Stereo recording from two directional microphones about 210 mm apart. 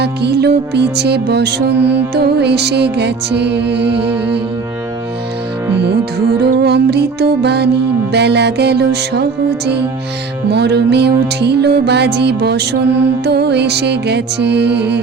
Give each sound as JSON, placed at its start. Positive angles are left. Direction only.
{"t": 0.0, "sound": "music", "side_deg": -50}
{"t": 5.7, "sound": "music", "side_deg": -50}